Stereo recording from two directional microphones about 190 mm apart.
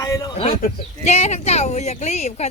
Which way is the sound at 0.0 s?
15° left (ahead or behind).